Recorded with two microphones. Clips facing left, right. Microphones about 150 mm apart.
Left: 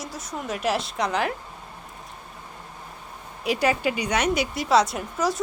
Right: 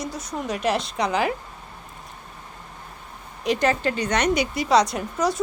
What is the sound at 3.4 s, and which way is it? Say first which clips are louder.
A woman's voice: right 1 dB; 5° left (ahead or behind).